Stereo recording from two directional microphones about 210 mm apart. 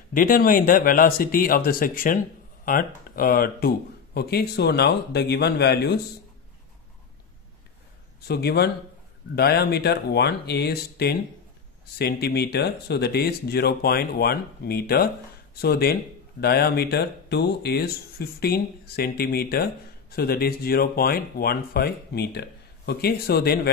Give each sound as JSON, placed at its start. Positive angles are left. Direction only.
{"t": 0.1, "sound": "speech", "side_deg": 40}
{"t": 8.3, "sound": "speech", "side_deg": 50}